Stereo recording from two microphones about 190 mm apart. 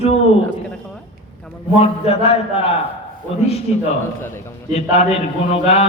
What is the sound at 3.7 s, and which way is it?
A man's voice, 35° left (ahead or behind).